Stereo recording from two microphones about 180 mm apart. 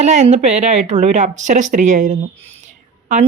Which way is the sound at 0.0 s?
40° right (ahead or behind).